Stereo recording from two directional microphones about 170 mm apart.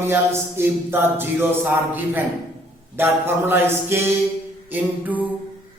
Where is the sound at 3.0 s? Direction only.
15° right (ahead or behind).